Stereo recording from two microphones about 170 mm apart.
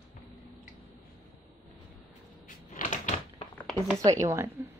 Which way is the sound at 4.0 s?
20° right (ahead or behind).